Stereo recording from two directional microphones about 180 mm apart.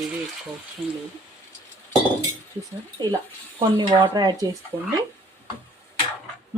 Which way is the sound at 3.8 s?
25° right (ahead or behind).